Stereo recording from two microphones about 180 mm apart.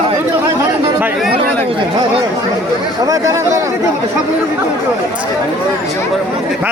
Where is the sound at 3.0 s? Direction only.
20° right (ahead or behind).